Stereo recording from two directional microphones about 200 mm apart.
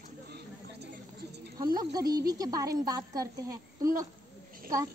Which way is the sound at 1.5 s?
20° right (ahead or behind).